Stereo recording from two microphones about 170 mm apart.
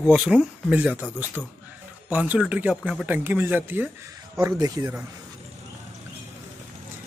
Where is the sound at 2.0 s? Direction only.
10° right (ahead or behind).